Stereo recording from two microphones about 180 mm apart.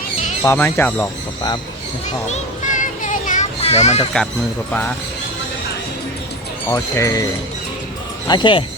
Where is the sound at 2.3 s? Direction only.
45° left (ahead or behind).